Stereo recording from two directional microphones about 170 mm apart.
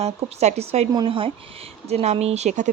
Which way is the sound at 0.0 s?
40° right (ahead or behind).